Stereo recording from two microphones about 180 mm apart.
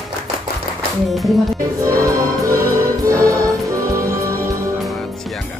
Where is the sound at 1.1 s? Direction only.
Centre (ahead or behind).